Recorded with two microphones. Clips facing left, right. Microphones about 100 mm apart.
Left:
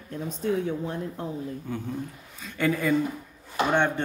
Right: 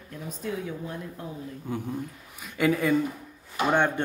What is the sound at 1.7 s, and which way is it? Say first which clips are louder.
Speech: right 5 dB; 15° right (ahead or behind).